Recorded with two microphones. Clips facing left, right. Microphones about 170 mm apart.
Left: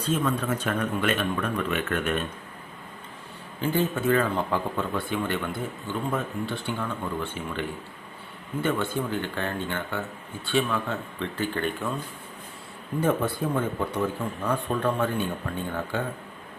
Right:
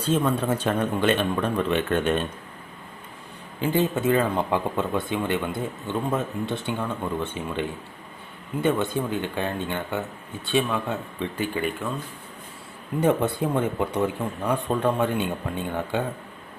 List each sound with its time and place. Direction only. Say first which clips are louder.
0.1 s speech: right 3 dB; 30° right (ahead or behind)
3.6 s speech: right 2 dB; 20° right (ahead or behind)
13.0 s speech: right 3 dB; 20° right (ahead or behind)